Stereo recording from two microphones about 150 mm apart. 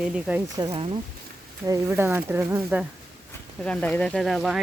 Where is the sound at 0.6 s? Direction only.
30° right (ahead or behind).